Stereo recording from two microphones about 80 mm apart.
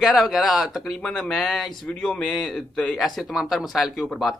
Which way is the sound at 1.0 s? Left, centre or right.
Centre.